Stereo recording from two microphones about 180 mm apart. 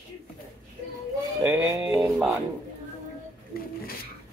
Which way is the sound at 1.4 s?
15° right (ahead or behind).